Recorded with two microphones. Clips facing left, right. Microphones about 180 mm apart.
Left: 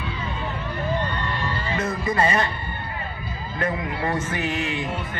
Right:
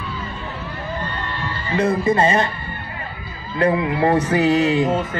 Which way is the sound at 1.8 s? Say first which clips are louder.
Right 7 dB; 30° right (ahead or behind).